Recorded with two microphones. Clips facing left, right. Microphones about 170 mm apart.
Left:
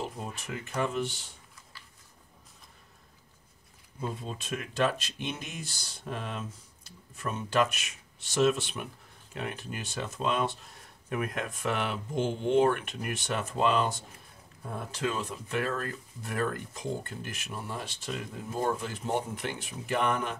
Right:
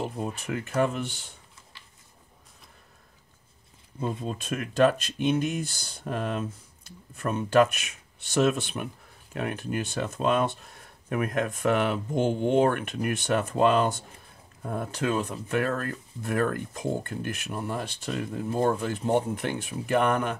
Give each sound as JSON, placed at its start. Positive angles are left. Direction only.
{"t": 0.7, "sound": "speech", "side_deg": -55}
{"t": 4.4, "sound": "speech", "side_deg": -50}